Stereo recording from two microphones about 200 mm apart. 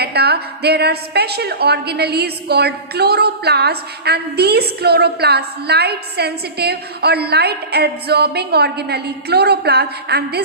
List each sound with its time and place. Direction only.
0.0 s a woman's voice: 55° right (ahead or behind)